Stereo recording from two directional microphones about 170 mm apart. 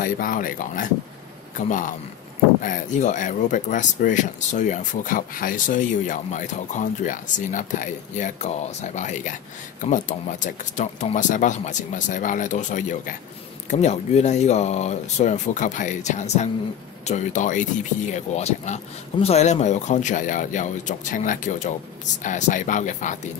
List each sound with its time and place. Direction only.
0.0 s speech: 55° left (ahead or behind)